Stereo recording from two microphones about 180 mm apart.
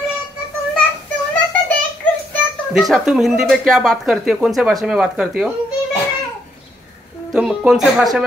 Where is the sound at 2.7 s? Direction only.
Centre (ahead or behind).